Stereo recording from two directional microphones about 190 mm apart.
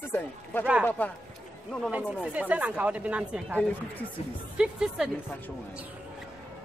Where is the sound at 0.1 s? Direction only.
10° left (ahead or behind).